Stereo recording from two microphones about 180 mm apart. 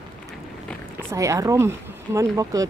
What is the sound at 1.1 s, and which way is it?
Speech, 15° right (ahead or behind).